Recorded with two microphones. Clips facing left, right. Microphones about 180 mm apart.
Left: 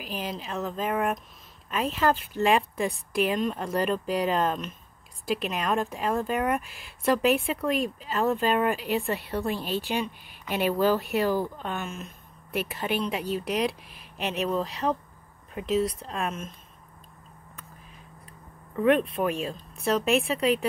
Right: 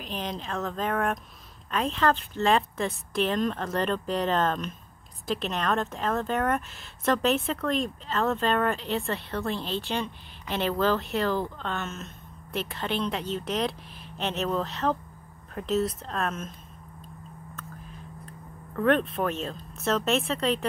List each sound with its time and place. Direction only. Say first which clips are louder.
0.0 s speech: even; 5° left (ahead or behind)
18.8 s speech: left 1 dB; 5° left (ahead or behind)